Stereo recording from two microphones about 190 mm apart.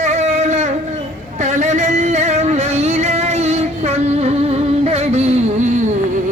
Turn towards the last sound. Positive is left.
turn(degrees=-35)  # may be behind; listen again after turning